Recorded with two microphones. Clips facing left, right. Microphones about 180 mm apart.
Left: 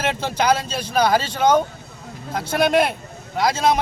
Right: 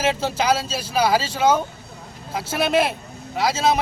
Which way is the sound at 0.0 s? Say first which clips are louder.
Even; 5° right (ahead or behind).